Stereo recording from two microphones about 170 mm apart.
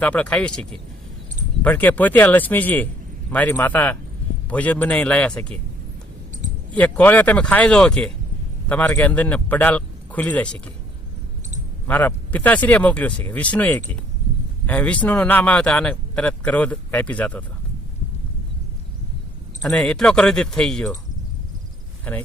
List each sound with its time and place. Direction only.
0.0 s speech: 10° left (ahead or behind)
6.3 s clicking: 45° right (ahead or behind)
6.7 s speech: 10° left (ahead or behind)
11.9 s speech: 10° left (ahead or behind)
19.6 s speech: 5° left (ahead or behind)
22.1 s speech: 10° left (ahead or behind)